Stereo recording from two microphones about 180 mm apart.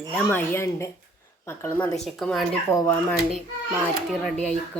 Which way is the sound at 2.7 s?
15° left (ahead or behind).